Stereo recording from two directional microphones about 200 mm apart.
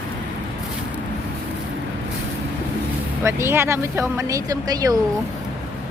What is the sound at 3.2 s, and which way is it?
Speech, 15° right (ahead or behind).